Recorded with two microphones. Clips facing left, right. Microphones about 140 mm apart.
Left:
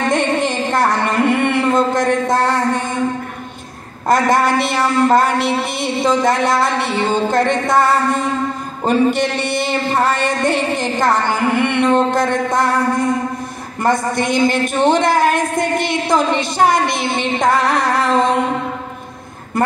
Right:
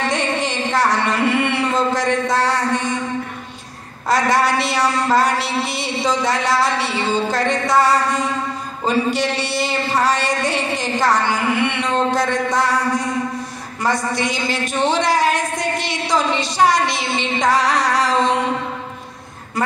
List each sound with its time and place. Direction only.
0.1 s music: 50° left (ahead or behind)
4.1 s a man's voice: 50° left (ahead or behind)